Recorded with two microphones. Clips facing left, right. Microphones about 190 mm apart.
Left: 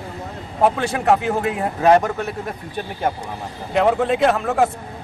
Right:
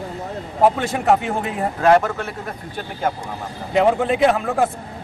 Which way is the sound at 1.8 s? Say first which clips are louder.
Even; 15° left (ahead or behind).